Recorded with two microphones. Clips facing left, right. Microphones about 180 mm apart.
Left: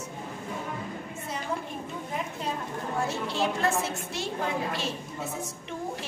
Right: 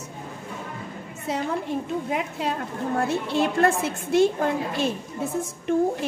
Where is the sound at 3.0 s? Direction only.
60° right (ahead or behind).